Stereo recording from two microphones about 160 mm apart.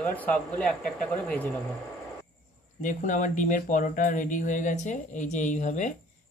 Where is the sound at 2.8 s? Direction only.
55° left (ahead or behind).